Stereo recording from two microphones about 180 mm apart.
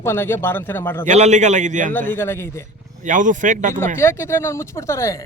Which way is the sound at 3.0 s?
45° right (ahead or behind).